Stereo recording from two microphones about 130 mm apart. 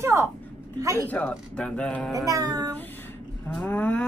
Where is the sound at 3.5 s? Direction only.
10° left (ahead or behind).